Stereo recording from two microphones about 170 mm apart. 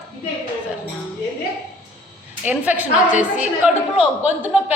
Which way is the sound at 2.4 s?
10° right (ahead or behind).